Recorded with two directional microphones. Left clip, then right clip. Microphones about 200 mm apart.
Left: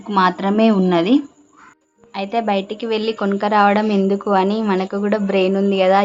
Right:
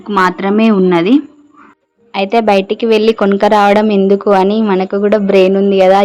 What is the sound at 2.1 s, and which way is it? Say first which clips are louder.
Speech: right 9 dB; 35° right (ahead or behind).